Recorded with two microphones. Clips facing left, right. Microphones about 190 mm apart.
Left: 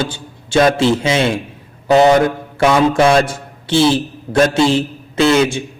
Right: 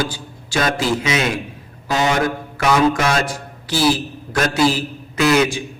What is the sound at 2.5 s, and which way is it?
A man's voice, 30° left (ahead or behind).